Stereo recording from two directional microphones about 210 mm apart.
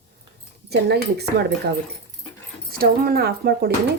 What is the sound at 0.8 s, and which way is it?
Speech, 50° right (ahead or behind).